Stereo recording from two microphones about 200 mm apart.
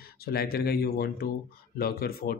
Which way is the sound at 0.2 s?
50° left (ahead or behind).